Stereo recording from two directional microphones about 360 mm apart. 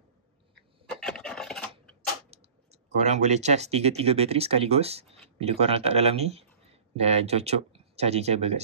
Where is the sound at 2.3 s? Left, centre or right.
Centre.